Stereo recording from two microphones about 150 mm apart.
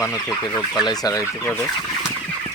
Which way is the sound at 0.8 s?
25° left (ahead or behind).